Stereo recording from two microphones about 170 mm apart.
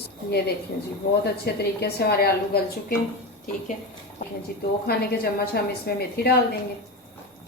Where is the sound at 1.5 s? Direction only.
70° left (ahead or behind).